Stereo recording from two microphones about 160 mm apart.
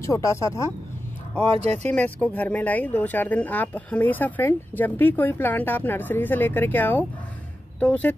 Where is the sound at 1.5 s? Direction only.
40° right (ahead or behind).